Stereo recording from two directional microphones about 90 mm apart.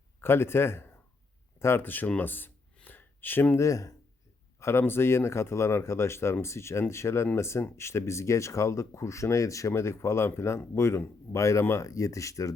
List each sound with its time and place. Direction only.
0.2 s a man's voice: 25° left (ahead or behind)
2.7 s a sound: 20° left (ahead or behind)
3.6 s speech: 35° left (ahead or behind)